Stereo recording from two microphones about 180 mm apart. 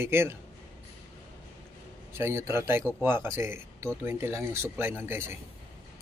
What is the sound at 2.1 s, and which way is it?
Speech, 15° right (ahead or behind).